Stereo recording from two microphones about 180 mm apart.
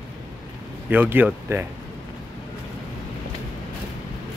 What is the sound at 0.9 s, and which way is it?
Speech, 10° right (ahead or behind).